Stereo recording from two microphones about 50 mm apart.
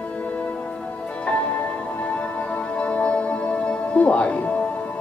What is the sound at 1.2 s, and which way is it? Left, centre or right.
Music, left.